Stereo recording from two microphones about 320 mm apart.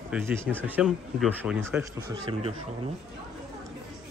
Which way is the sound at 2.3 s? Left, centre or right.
Centre.